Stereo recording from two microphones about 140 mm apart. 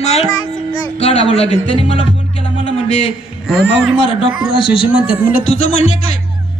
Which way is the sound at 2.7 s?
45° left (ahead or behind).